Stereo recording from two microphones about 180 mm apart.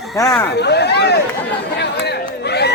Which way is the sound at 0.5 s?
70° left (ahead or behind).